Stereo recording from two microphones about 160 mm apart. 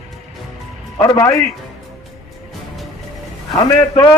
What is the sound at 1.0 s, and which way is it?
Speech, 25° left (ahead or behind).